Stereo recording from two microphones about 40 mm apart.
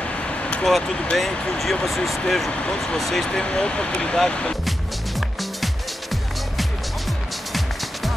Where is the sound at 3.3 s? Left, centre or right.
Left.